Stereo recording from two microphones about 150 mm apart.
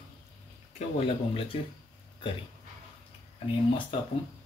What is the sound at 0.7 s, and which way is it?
Speech, 45° left (ahead or behind).